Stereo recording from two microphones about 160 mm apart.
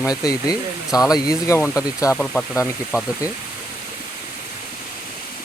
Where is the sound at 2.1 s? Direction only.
5° left (ahead or behind).